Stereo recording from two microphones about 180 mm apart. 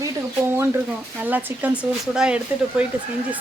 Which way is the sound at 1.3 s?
10° right (ahead or behind).